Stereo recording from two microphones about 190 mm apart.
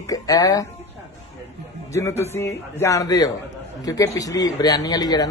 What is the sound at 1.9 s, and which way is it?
A man's voice, 15° left (ahead or behind).